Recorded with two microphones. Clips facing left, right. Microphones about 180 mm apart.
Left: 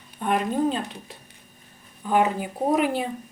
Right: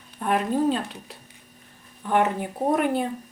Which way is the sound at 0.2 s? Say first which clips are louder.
Even; centre (ahead or behind).